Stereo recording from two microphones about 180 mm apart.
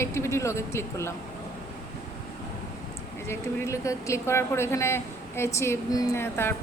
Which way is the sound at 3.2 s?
15° left (ahead or behind).